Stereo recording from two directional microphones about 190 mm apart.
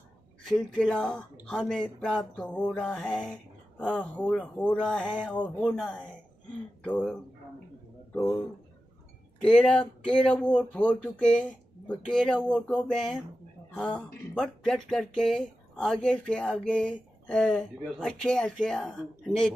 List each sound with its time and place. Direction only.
0.5 s music: 5° left (ahead or behind)
6.8 s speech: 5° left (ahead or behind)
9.4 s music: 5° left (ahead or behind)